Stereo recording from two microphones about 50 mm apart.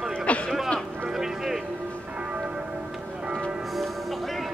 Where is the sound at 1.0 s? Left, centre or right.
Centre.